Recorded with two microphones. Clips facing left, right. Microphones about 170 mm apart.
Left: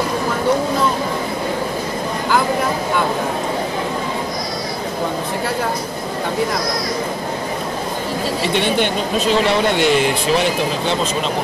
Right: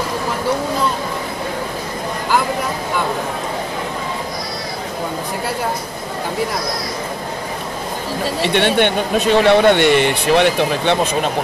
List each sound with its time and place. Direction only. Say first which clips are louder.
8.5 s speech: right 4 dB; 60° right (ahead or behind)